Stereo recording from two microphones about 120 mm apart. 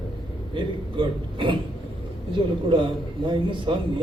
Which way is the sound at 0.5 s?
45° right (ahead or behind).